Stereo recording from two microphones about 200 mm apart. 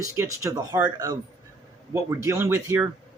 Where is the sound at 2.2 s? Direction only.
15° right (ahead or behind).